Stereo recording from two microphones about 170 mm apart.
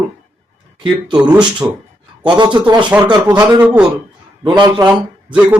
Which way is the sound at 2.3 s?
25° right (ahead or behind).